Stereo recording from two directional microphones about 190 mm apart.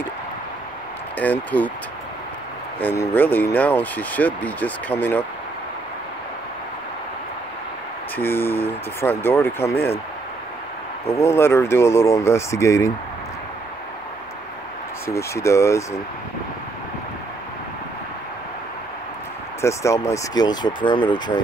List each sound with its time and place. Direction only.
1.2 s speech: 10° left (ahead or behind)
2.8 s speech: 10° left (ahead or behind)
8.2 s speech: 10° left (ahead or behind)
11.1 s speech: 15° left (ahead or behind)
15.0 s speech: 15° left (ahead or behind)
19.6 s speech: 15° left (ahead or behind)